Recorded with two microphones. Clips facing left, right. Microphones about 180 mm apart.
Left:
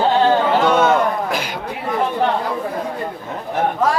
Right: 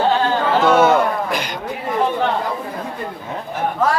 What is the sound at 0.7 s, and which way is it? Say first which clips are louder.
Speech: right 5 dB; 5° right (ahead or behind).